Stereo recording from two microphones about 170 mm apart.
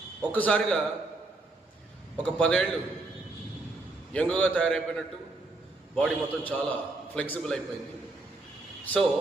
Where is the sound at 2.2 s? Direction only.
5° left (ahead or behind).